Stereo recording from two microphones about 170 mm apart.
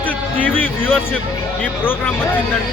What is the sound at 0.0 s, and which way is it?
Speech, 10° left (ahead or behind).